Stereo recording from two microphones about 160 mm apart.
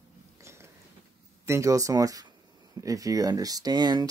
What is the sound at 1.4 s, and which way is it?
Speech, 20° right (ahead or behind).